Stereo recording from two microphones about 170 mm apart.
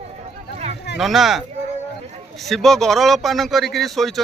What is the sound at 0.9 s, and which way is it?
Speech, centre (ahead or behind).